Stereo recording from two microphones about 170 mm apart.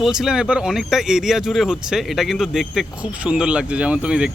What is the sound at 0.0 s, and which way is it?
Speech, 5° right (ahead or behind).